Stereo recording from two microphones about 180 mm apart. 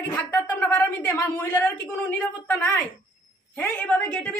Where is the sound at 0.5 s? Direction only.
10° left (ahead or behind).